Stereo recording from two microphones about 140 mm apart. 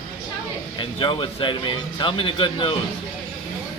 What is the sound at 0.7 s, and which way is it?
Speech, 35° left (ahead or behind).